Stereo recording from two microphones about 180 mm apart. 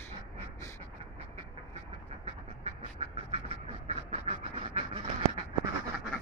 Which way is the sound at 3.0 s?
35° right (ahead or behind).